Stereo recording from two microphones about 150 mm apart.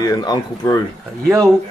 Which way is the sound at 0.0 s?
25° left (ahead or behind).